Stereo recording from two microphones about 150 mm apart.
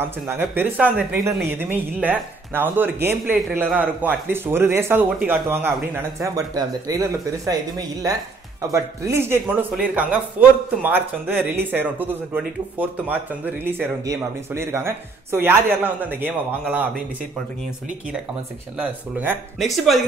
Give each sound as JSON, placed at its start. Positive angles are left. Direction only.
{"t": 0.0, "sound": "speech", "side_deg": -15}
{"t": 18.8, "sound": "speech", "side_deg": -10}